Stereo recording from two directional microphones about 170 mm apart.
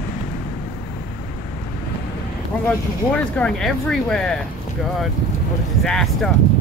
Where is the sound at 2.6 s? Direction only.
5° left (ahead or behind).